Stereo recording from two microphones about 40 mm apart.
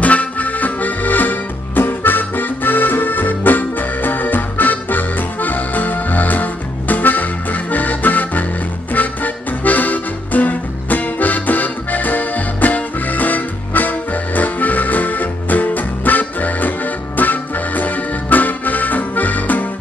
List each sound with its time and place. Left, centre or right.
0.0 s accordion: left
8.9 s music: left